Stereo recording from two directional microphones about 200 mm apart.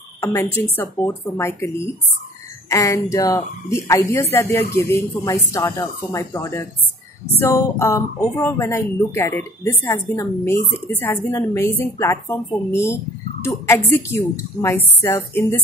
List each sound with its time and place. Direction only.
0.2 s speech: 15° left (ahead or behind)